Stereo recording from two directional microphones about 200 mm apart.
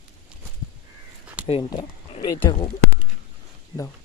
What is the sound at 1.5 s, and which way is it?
Speech, 25° left (ahead or behind).